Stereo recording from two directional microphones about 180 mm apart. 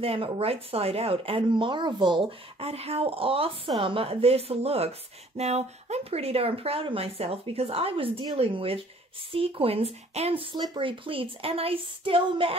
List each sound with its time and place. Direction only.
0.0 s speech: 30° right (ahead or behind)